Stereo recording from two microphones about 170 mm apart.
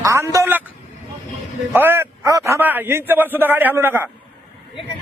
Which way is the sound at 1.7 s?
10° right (ahead or behind).